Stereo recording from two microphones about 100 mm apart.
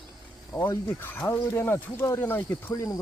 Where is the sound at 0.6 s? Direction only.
20° left (ahead or behind).